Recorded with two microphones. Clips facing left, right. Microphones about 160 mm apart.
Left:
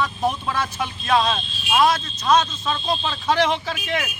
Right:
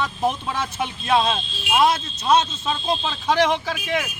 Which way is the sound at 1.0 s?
5° right (ahead or behind).